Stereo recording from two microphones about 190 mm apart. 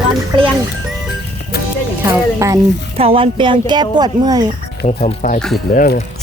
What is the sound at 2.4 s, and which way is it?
Speech, 15° right (ahead or behind).